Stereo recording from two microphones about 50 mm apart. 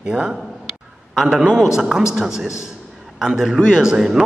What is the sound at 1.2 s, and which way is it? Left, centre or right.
A man's voice, centre.